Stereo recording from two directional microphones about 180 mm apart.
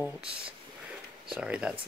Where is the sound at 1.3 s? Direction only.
5° right (ahead or behind).